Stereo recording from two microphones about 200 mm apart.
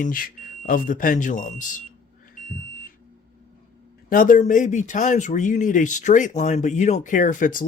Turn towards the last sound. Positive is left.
turn(degrees=40)  # may be behind; listen again after turning